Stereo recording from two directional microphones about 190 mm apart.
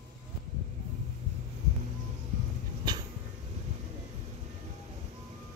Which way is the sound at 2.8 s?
25° right (ahead or behind).